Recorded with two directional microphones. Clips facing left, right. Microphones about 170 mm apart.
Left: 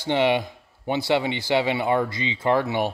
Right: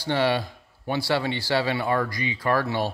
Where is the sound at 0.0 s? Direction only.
20° left (ahead or behind).